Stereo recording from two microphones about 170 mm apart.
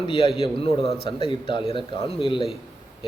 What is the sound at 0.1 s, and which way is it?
Speech, 30° left (ahead or behind).